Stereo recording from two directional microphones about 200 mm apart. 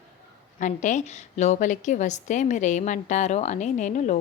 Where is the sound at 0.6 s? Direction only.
40° left (ahead or behind).